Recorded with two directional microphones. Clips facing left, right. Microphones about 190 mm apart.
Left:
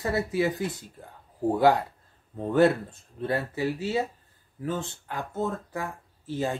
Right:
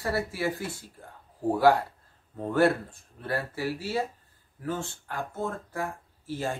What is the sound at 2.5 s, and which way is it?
Speech, 20° left (ahead or behind).